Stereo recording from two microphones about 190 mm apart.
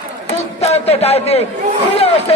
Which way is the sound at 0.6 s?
35° left (ahead or behind).